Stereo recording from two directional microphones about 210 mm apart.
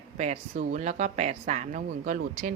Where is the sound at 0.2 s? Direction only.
35° right (ahead or behind).